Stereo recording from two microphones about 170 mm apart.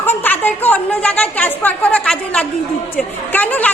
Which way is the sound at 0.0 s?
10° left (ahead or behind).